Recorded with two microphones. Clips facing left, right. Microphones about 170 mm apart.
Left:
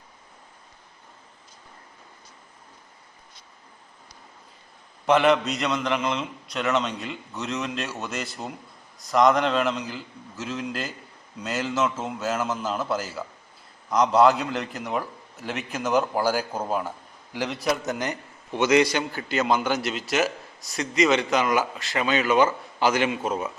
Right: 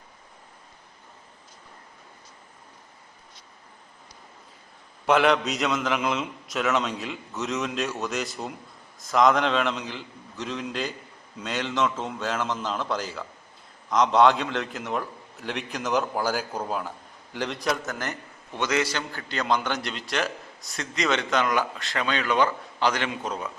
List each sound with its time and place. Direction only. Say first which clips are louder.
5.0 s a man's voice: left 1 dB; centre (ahead or behind)
17.8 s a man's voice: left 4 dB; 20° left (ahead or behind)